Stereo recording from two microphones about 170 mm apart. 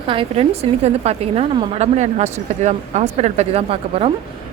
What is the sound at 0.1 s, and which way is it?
A woman's voice, 35° right (ahead or behind).